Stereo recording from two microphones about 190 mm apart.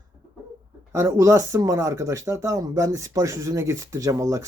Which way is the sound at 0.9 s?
15° right (ahead or behind).